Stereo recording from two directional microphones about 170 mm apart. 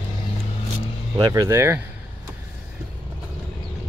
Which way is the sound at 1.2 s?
20° right (ahead or behind).